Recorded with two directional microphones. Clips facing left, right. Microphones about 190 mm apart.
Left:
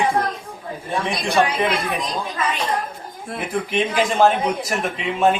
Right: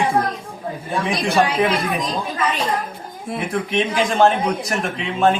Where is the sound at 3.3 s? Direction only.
Centre (ahead or behind).